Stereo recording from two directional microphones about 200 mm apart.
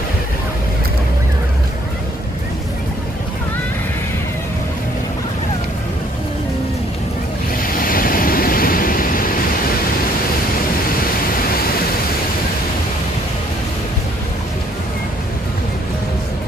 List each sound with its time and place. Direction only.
7.6 s waves: 45° left (ahead or behind)